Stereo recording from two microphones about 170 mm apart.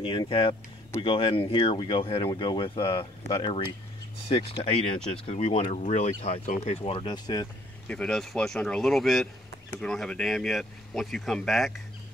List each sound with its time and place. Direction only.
0.0 s speech: 30° left (ahead or behind)
7.9 s speech: 5° left (ahead or behind)